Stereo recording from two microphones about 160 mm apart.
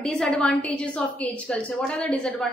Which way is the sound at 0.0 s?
5° left (ahead or behind).